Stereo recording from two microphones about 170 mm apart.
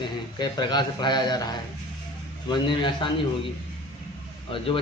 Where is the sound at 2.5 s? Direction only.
25° left (ahead or behind).